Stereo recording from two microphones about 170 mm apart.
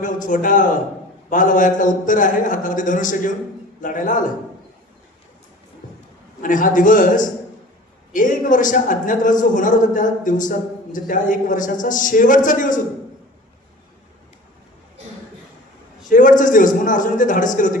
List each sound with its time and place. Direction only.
0.0 s a man's voice: 50° left (ahead or behind)
6.4 s a man's voice: 50° left (ahead or behind)
16.0 s a man's voice: 50° left (ahead or behind)